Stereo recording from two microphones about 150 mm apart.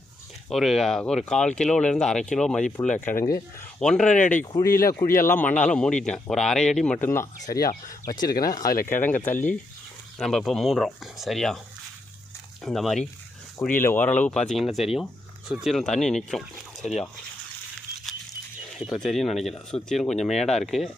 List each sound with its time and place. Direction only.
0.5 s speech: centre (ahead or behind)
3.2 s speech: 20° left (ahead or behind)
3.8 s speech: 5° left (ahead or behind)
4.5 s a man's voice: 20° left (ahead or behind); by 7.0 s 5° left (ahead or behind)
7.0 s a man's voice: 15° left (ahead or behind)
8.7 s speech: 65° left (ahead or behind)
9.0 s a man's voice: 15° left (ahead or behind)
10.2 s speech: centre (ahead or behind)
12.6 s speech: centre (ahead or behind)
13.8 s speech: 10° left (ahead or behind)
18.8 s speech: centre (ahead or behind)